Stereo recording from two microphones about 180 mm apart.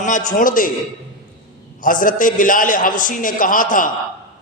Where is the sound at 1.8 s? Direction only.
50° left (ahead or behind).